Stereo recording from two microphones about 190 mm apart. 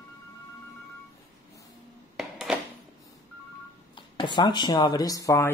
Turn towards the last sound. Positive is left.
turn(degrees=15)  # may be behind; listen again after turning